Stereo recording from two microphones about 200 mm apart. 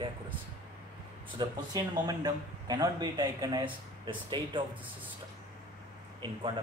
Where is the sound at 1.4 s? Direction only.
20° right (ahead or behind).